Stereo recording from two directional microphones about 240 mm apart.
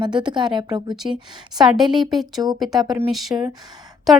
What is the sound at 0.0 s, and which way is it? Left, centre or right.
Speech, centre.